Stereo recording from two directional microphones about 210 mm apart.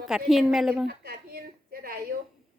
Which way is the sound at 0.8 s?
50° right (ahead or behind).